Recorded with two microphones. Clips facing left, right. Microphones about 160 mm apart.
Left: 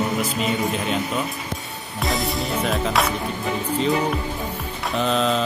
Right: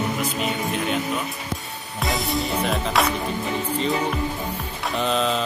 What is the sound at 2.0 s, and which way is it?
Music, centre (ahead or behind).